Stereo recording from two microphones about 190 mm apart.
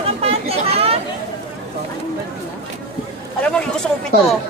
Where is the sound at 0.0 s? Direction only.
30° right (ahead or behind).